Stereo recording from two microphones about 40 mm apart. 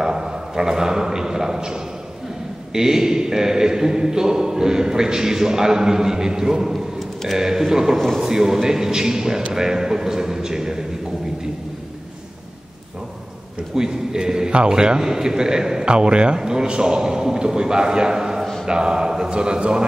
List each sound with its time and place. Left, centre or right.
0.0 s a man's voice: centre
7.0 s a sound: centre
7.3 s a man's voice: centre
13.7 s a man's voice: centre